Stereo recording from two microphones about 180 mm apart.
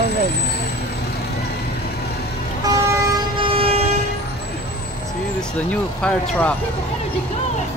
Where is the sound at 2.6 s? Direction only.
25° right (ahead or behind).